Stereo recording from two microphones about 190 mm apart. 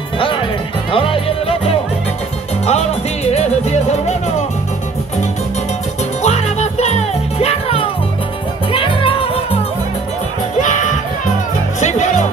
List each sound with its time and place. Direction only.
0.9 s music: 30° left (ahead or behind)
6.2 s music: 35° left (ahead or behind)
10.6 s music: 40° left (ahead or behind)